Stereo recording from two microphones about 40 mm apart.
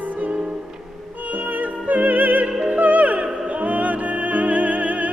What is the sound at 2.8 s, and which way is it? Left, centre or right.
Music, right.